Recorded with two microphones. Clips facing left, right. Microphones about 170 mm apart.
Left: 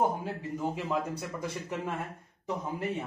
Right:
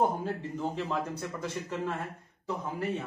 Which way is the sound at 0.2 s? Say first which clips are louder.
Right 1 dB; 10° left (ahead or behind).